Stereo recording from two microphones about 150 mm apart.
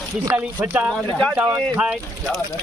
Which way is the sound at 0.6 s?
10° right (ahead or behind).